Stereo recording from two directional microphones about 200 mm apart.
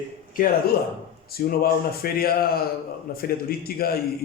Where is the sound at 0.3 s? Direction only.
45° left (ahead or behind).